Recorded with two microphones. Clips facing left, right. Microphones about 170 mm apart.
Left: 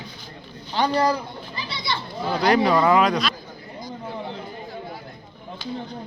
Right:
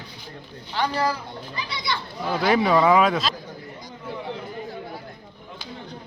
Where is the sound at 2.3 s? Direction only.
Centre (ahead or behind).